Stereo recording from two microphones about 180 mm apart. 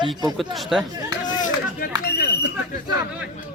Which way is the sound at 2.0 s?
65° left (ahead or behind).